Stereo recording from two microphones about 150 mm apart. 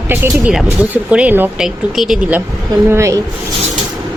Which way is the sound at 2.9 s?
20° right (ahead or behind).